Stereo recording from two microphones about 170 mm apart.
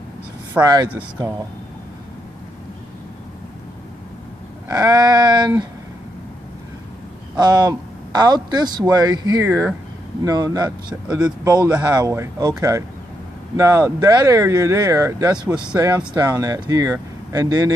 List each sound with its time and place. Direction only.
0.6 s a man's voice: 25° right (ahead or behind)
0.8 s speech: 10° right (ahead or behind)
4.6 s a man's voice: 20° right (ahead or behind)
7.3 s a man's voice: 25° right (ahead or behind)
9.5 s a man's voice: 10° right (ahead or behind)